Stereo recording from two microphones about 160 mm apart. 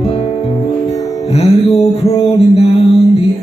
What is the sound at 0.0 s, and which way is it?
Music, 40° left (ahead or behind).